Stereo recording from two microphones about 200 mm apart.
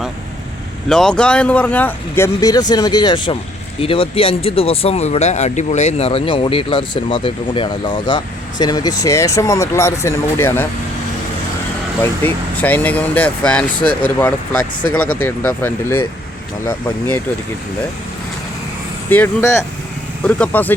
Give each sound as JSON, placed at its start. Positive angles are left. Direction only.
{"t": 0.9, "sound": "speech", "side_deg": 5}
{"t": 12.2, "sound": "speech", "side_deg": 10}
{"t": 19.1, "sound": "speech", "side_deg": 10}